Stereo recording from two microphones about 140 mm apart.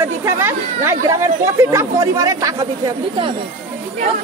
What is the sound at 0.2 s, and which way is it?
Speech, 20° right (ahead or behind).